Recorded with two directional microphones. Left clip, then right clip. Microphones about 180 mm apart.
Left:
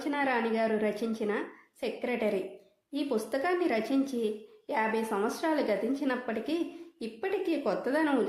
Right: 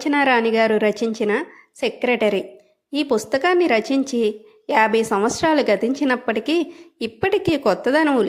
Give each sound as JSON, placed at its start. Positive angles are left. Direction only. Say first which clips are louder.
{"t": 0.0, "sound": "a woman's voice", "louder": "right 12 dB", "side_deg": -40}